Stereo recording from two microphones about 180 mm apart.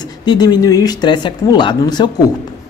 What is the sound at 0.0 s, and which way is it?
Speech, 25° left (ahead or behind).